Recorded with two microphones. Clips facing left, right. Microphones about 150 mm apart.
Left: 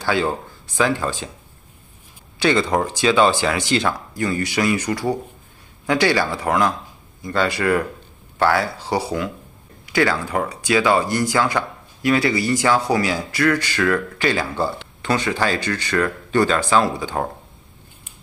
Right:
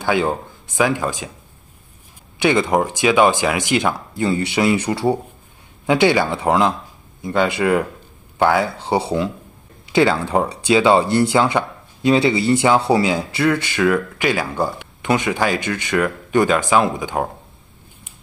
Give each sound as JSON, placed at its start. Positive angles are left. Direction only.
{"t": 0.0, "sound": "speech", "side_deg": -15}
{"t": 2.3, "sound": "speech", "side_deg": -15}
{"t": 4.1, "sound": "speech", "side_deg": -25}